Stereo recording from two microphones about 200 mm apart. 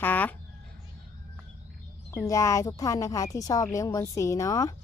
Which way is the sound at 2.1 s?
15° left (ahead or behind).